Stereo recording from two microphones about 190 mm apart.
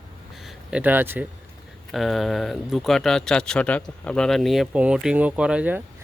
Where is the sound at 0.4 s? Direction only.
5° right (ahead or behind).